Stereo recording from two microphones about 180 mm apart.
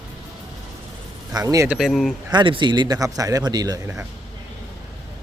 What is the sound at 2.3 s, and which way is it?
A man's voice, 25° right (ahead or behind).